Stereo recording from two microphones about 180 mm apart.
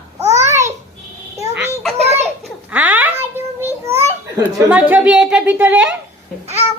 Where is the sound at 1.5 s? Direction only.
5° right (ahead or behind).